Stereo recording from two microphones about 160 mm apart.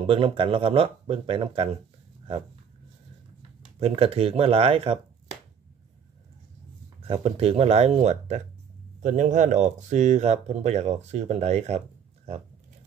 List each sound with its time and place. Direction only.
0.0 s speech: 35° right (ahead or behind)
3.8 s speech: 35° right (ahead or behind)
7.0 s speech: 35° right (ahead or behind)